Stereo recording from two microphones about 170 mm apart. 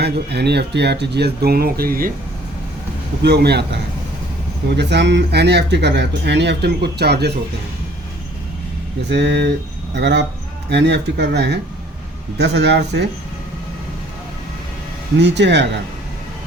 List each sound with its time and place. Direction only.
0.0 s speech: 75° right (ahead or behind); by 2.1 s 60° right (ahead or behind)
3.2 s speech: 75° right (ahead or behind)
9.0 s speech: 90° right
15.2 s speech: 90° right